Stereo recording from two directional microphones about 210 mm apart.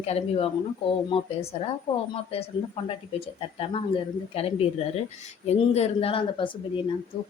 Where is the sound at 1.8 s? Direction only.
25° left (ahead or behind).